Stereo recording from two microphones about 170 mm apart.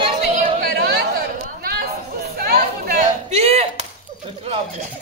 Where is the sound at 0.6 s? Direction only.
65° right (ahead or behind).